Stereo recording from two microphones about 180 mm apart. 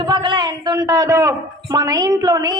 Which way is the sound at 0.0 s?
25° right (ahead or behind).